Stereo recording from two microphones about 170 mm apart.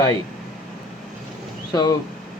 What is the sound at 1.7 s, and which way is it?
Speech, 25° left (ahead or behind).